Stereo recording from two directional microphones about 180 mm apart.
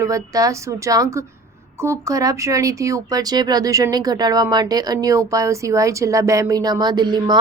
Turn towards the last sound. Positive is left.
turn(degrees=-25)  # may be behind; listen again after turning